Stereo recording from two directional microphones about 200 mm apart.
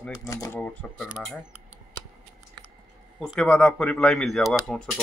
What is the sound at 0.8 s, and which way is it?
Speech, 5° left (ahead or behind).